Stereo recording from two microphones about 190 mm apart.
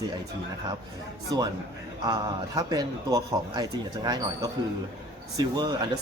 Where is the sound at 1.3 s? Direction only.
25° right (ahead or behind).